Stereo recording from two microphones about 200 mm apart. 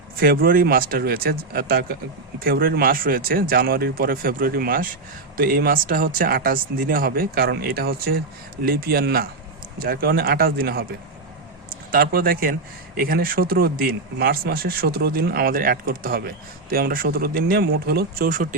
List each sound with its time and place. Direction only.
0.2 s speech: 45° right (ahead or behind)
11.9 s speech: 45° right (ahead or behind)